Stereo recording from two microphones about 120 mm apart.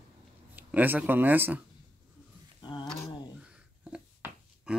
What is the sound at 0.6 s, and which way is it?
Speech, 15° right (ahead or behind).